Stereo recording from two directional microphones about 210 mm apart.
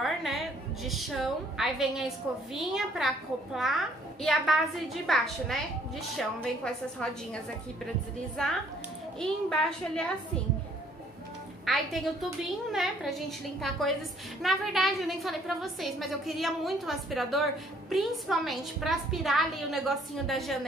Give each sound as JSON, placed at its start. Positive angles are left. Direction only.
{"t": 0.0, "sound": "a woman's voice", "side_deg": 0}
{"t": 9.2, "sound": "a woman's voice", "side_deg": 5}
{"t": 11.6, "sound": "a woman's voice", "side_deg": 0}